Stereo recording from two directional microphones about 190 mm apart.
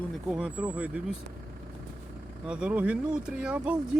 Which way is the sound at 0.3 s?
5° right (ahead or behind).